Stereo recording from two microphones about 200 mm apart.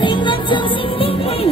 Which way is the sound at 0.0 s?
25° left (ahead or behind).